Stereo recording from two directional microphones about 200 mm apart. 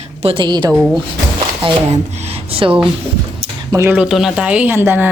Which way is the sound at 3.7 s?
15° right (ahead or behind).